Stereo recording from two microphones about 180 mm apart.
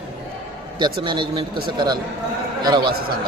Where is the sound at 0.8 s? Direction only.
25° right (ahead or behind).